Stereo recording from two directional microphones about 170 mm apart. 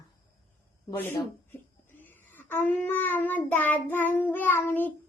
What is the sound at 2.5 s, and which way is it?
Child singing, 10° left (ahead or behind).